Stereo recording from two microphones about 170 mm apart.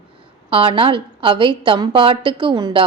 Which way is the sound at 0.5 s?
30° right (ahead or behind).